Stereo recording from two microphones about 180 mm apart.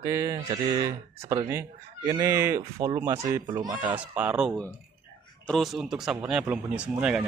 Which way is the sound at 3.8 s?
10° right (ahead or behind).